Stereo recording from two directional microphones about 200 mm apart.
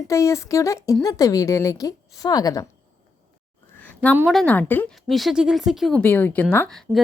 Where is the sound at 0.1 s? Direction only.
15° left (ahead or behind).